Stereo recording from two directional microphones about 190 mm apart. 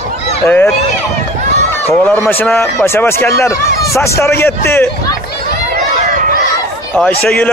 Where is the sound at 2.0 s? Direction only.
10° left (ahead or behind).